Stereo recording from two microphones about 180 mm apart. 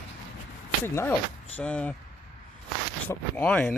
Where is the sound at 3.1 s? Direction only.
10° left (ahead or behind).